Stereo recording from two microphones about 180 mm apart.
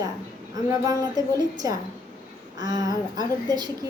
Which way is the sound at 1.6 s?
20° right (ahead or behind).